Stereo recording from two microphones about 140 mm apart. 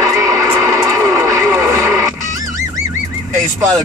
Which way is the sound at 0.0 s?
25° right (ahead or behind).